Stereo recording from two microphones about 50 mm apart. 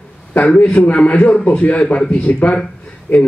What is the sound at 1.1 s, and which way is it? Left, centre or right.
A man's voice, left.